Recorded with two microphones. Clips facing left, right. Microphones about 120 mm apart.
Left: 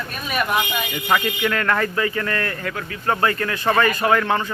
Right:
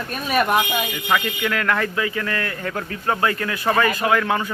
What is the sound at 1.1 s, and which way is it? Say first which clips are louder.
Speech: left 2 dB; 5° left (ahead or behind).